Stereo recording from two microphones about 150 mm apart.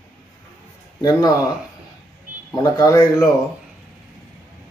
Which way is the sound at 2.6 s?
20° left (ahead or behind).